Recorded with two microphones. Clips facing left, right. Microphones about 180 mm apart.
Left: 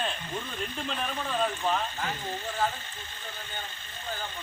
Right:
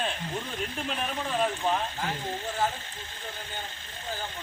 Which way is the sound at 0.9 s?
15° right (ahead or behind).